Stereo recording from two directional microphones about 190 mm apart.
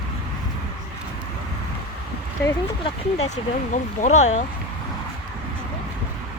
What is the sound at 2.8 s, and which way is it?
Speech, 35° left (ahead or behind).